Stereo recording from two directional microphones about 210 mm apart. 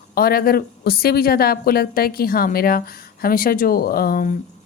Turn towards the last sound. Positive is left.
turn(degrees=45)  # may be behind; listen again after turning